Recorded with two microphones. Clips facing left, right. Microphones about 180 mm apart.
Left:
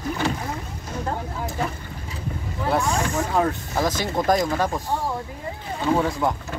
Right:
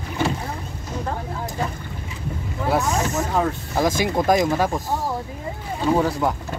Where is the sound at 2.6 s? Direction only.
5° right (ahead or behind).